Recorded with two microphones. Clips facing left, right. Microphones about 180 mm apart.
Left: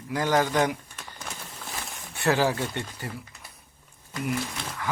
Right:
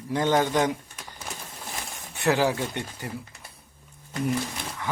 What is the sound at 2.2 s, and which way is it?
Speech, 15° right (ahead or behind).